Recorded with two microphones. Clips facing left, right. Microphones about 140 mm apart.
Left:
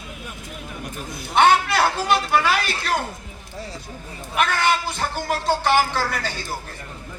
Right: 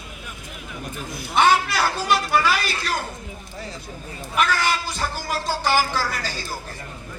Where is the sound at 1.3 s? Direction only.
60° left (ahead or behind).